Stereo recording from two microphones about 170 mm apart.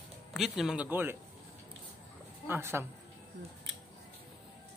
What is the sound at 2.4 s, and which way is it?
Speech, 15° right (ahead or behind).